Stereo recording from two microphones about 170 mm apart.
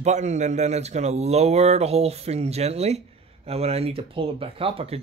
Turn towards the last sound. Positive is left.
turn(degrees=-35)  # may be behind; listen again after turning